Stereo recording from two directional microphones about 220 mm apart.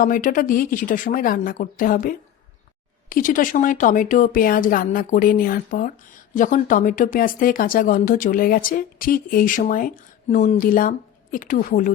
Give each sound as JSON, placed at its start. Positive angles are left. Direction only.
{"t": 0.0, "sound": "speech", "side_deg": 40}